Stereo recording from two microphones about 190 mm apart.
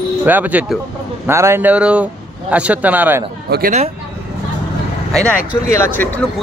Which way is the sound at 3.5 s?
55° right (ahead or behind).